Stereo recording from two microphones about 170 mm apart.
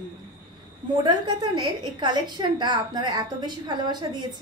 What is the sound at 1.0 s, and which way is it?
A woman's voice, 25° right (ahead or behind).